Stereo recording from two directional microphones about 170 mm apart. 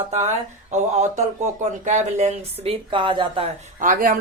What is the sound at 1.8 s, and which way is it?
Speech, 45° right (ahead or behind).